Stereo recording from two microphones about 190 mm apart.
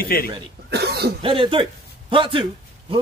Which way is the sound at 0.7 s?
60° right (ahead or behind).